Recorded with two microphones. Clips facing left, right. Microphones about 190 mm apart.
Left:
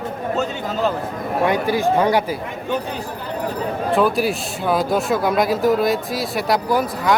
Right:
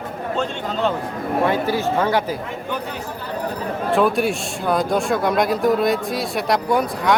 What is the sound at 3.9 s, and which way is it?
Speech, centre (ahead or behind).